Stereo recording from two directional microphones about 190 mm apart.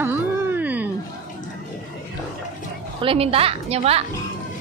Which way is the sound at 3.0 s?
30° right (ahead or behind).